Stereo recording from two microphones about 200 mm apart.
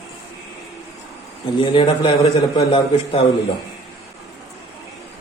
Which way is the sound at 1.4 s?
25° left (ahead or behind).